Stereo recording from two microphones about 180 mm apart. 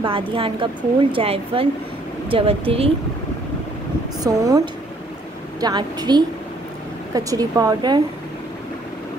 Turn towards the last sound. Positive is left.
turn(degrees=-20)  # may be behind; listen again after turning